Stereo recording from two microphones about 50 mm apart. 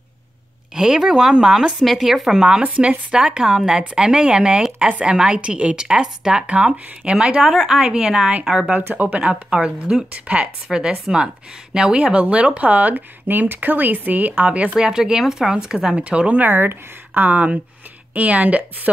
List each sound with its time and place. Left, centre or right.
0.7 s speech: centre
2.6 s speech: right
5.1 s speech: centre
5.4 s speech: right
8.7 s speech: right
9.2 s speech: right
14.8 s speech: centre
16.0 s speech: right
16.4 s speech: right